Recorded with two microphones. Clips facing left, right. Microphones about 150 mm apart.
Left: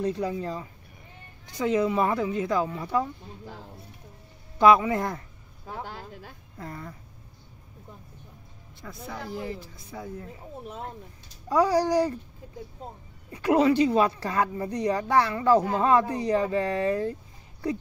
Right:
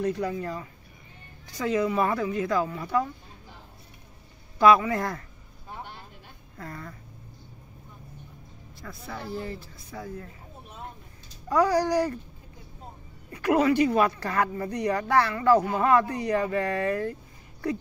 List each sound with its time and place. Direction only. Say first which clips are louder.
0.0 s a woman's voice: even; 20° left (ahead or behind)
4.6 s a woman's voice: left 1 dB; 20° left (ahead or behind)
5.7 s vehicle: left 4 dB; 90° left
6.6 s speech: left 1 dB; 15° left (ahead or behind)
8.8 s speech: even; 15° left (ahead or behind)
11.4 s a child's voice: even; 10° left (ahead or behind)
11.7 s a woman's voice: left 1 dB; 30° left (ahead or behind)
13.4 s a woman's voice: left 1 dB; 25° left (ahead or behind)